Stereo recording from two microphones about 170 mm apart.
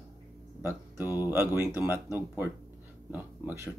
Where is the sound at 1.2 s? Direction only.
15° right (ahead or behind).